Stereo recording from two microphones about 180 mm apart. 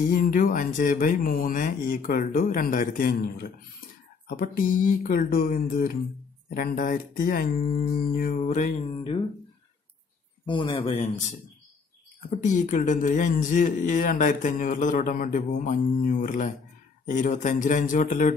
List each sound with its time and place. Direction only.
0.1 s speech: 50° left (ahead or behind)
8.5 s music: 40° left (ahead or behind)
10.4 s speech: 25° left (ahead or behind)
12.3 s speech: 45° left (ahead or behind)